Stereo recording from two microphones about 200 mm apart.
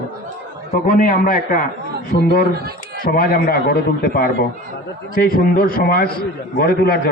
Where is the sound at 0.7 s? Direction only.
45° left (ahead or behind).